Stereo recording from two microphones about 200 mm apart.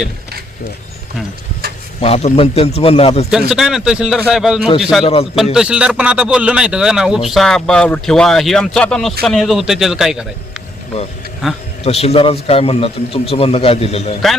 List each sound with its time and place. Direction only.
2.0 s a man's voice: 30° left (ahead or behind)
3.5 s speech: centre (ahead or behind)
5.0 s a man's voice: 30° left (ahead or behind)
5.5 s speech: 5° right (ahead or behind)
11.8 s a man's voice: 30° left (ahead or behind)